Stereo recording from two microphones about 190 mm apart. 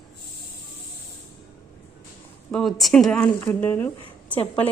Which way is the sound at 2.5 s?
Centre (ahead or behind).